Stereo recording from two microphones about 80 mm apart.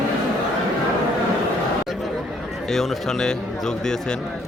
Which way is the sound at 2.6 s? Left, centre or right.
Centre.